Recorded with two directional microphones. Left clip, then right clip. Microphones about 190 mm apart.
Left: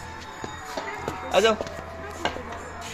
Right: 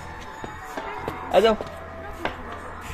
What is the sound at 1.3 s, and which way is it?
Speech, 35° right (ahead or behind).